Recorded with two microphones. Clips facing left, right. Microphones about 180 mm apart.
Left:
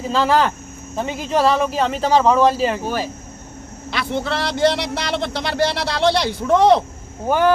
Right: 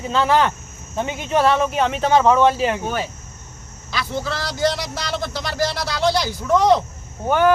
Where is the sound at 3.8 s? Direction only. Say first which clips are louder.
Left 3 dB; 60° left (ahead or behind).